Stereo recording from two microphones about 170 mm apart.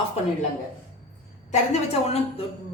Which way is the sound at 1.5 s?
40° left (ahead or behind).